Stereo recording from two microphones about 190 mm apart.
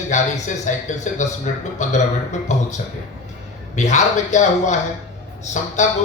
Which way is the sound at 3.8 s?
40° left (ahead or behind).